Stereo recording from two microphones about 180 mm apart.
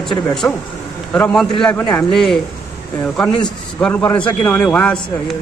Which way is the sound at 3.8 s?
10° left (ahead or behind).